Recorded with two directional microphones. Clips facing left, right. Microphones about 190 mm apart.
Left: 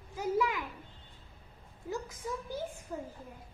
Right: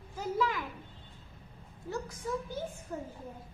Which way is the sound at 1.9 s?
20° left (ahead or behind).